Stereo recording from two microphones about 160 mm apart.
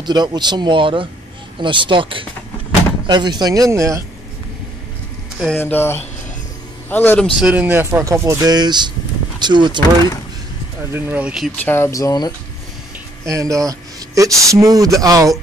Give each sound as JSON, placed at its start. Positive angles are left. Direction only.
{"t": 0.0, "sound": "speech", "side_deg": -25}
{"t": 5.6, "sound": "speech", "side_deg": 15}
{"t": 7.3, "sound": "speech", "side_deg": -10}
{"t": 10.8, "sound": "speech", "side_deg": -15}
{"t": 11.6, "sound": "speech", "side_deg": 15}
{"t": 13.2, "sound": "speech", "side_deg": -20}